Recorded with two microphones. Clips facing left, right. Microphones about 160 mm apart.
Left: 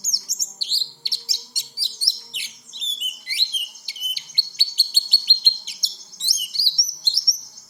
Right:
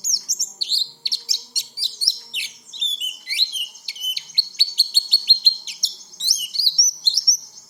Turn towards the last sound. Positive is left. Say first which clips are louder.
# right 1 dB
turn(degrees=-20)  # may be behind; listen again after turning